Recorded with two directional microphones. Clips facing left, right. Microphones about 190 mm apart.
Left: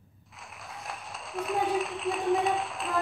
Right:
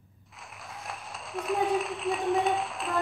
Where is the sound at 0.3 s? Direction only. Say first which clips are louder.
Even; centre (ahead or behind).